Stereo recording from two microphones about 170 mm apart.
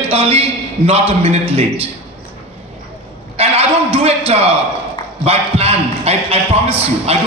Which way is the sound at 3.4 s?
35° right (ahead or behind).